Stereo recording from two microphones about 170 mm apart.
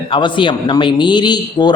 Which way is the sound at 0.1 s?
30° left (ahead or behind).